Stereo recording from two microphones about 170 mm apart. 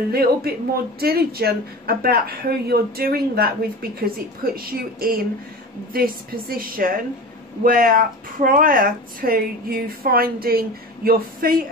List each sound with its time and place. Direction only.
0.1 s speech: 65° right (ahead or behind)